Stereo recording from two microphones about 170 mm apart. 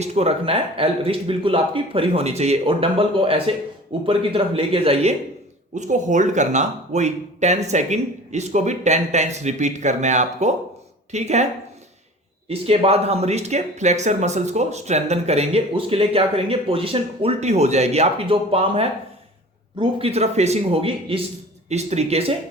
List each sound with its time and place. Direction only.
0.0 s speech: 40° right (ahead or behind)
5.7 s speech: 45° right (ahead or behind)
12.5 s speech: 35° right (ahead or behind)